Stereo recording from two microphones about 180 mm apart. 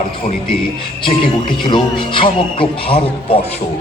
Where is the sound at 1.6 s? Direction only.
25° left (ahead or behind).